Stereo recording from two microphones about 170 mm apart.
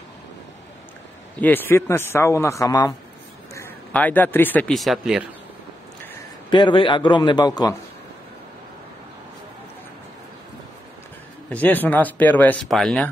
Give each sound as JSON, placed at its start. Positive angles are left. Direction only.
{"t": 1.4, "sound": "speech", "side_deg": 10}
{"t": 3.5, "sound": "speech", "side_deg": 10}
{"t": 6.5, "sound": "a man's voice", "side_deg": 30}
{"t": 11.4, "sound": "speech", "side_deg": 10}